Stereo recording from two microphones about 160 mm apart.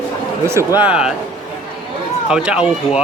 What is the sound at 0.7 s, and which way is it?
Speech, 5° right (ahead or behind).